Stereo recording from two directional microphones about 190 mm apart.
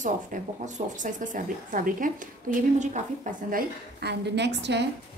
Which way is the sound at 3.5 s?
60° right (ahead or behind).